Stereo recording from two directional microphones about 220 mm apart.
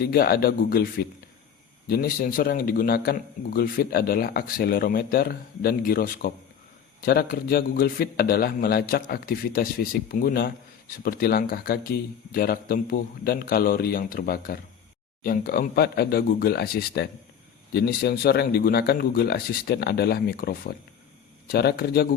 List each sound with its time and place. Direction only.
0.0 s a man's voice: 45° left (ahead or behind)
1.9 s a man's voice: 40° left (ahead or behind)